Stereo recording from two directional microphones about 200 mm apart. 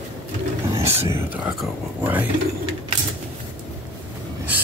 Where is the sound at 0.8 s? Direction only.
30° right (ahead or behind).